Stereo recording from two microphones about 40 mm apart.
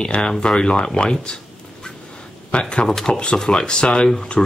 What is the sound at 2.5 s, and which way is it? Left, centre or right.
Speech, left.